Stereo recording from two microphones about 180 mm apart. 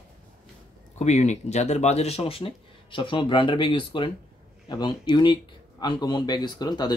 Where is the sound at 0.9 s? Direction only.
40° left (ahead or behind).